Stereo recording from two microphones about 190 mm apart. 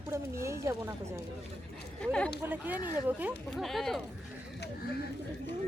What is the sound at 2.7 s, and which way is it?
Speech, 20° left (ahead or behind).